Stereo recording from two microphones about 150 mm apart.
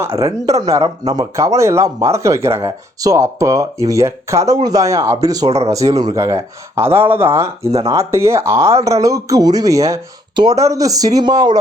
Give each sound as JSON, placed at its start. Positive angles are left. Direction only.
{"t": 0.0, "sound": "speech", "side_deg": -20}